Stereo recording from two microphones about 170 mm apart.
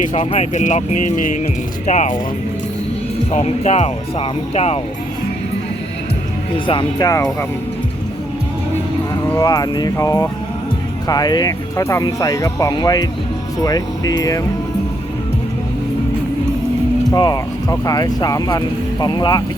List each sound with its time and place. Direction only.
0.0 s speech: 40° left (ahead or behind)
3.3 s speech: 40° left (ahead or behind)
6.5 s speech: 30° left (ahead or behind)
9.2 s speech: 20° left (ahead or behind)
17.1 s speech: 20° left (ahead or behind)